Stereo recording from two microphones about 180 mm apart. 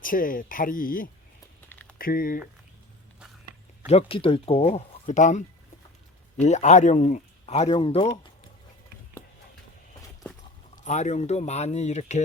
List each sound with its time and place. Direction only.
0.0 s speech: 50° left (ahead or behind)
1.7 s a sound: 10° left (ahead or behind)
2.0 s speech: 55° left (ahead or behind)
3.8 s speech: 30° left (ahead or behind)
6.4 s speech: 40° left (ahead or behind)
10.8 s speech: 40° left (ahead or behind)